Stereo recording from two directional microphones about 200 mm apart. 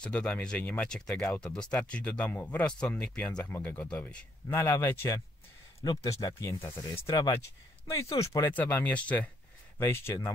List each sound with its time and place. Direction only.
0.0 s speech: 5° left (ahead or behind)